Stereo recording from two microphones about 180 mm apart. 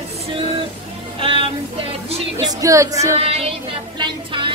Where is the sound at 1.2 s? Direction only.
30° right (ahead or behind).